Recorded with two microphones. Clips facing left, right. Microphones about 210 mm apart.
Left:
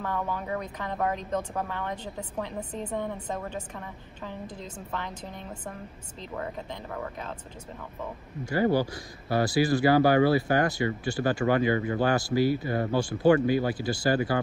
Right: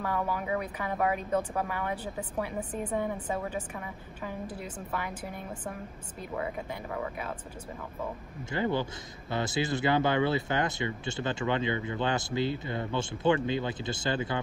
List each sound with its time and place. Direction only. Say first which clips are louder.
0.0 s speech: even; 10° right (ahead or behind)
8.7 s speech: left 5 dB; 20° right (ahead or behind)